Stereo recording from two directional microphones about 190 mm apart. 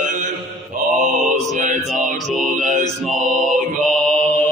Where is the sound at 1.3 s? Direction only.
40° right (ahead or behind).